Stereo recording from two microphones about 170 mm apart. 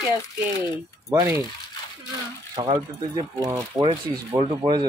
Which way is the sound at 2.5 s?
25° right (ahead or behind).